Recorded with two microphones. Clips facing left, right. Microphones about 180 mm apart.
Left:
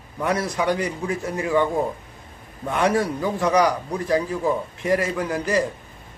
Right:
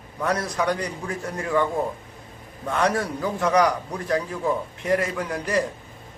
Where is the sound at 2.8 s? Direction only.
5° left (ahead or behind).